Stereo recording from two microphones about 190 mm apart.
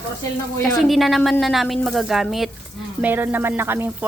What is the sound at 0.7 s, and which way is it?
Speech, centre (ahead or behind).